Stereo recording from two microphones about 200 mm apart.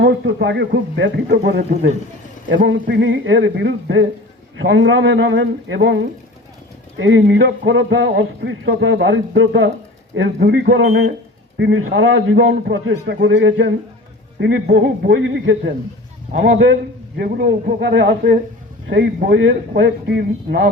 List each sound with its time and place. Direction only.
0.0 s speech: 60° right (ahead or behind)
17.2 s speech: 50° right (ahead or behind)